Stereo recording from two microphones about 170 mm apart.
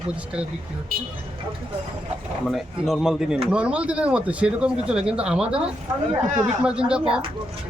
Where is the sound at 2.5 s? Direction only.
Centre (ahead or behind).